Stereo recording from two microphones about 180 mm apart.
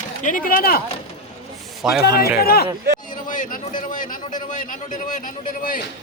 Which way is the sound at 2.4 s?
60° left (ahead or behind).